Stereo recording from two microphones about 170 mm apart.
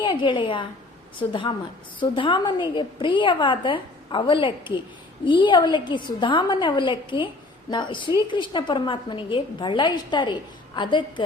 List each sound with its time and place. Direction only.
0.0 s a woman's voice: 30° left (ahead or behind)